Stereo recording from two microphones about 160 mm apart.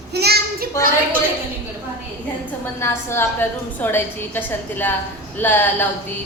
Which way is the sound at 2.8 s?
15° left (ahead or behind).